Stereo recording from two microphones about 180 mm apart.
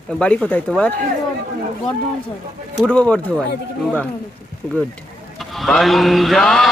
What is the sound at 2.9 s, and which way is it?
Speech, 5° left (ahead or behind).